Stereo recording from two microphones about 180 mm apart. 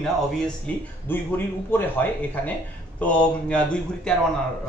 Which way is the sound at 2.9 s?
5° left (ahead or behind).